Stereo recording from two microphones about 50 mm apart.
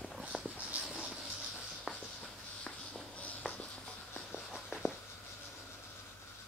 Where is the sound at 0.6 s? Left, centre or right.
Right.